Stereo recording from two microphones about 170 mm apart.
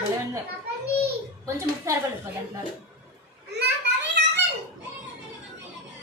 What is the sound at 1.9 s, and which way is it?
Speech, 20° right (ahead or behind).